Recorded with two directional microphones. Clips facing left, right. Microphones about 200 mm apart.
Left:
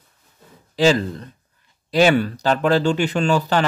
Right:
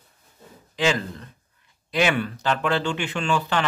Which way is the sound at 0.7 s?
35° left (ahead or behind).